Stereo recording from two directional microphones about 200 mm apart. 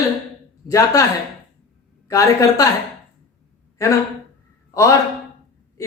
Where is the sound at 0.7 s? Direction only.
15° left (ahead or behind).